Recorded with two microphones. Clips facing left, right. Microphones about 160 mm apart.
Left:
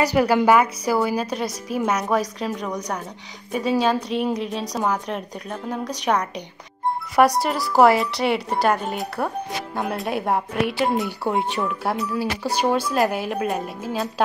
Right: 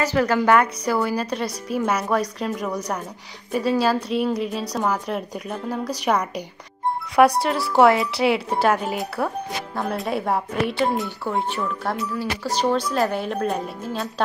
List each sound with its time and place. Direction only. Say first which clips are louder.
0.0 s a woman's voice: left 2 dB; 15° left (ahead or behind)
3.5 s a woman's voice: even; centre (ahead or behind)
11.2 s a woman's voice: left 1 dB; 15° left (ahead or behind)